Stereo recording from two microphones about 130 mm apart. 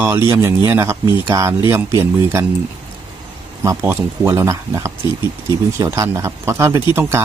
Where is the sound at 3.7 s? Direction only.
20° right (ahead or behind).